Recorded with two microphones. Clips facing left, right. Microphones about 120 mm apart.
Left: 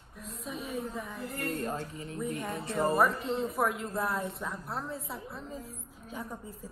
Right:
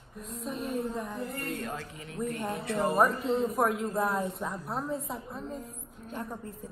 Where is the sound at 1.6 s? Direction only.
35° left (ahead or behind).